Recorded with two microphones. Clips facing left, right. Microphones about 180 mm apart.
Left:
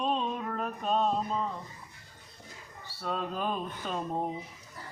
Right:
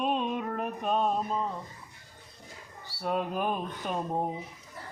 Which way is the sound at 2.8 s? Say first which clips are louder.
Right 4 dB; 15° right (ahead or behind).